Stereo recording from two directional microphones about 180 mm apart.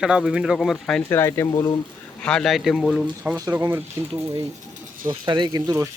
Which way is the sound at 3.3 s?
15° right (ahead or behind).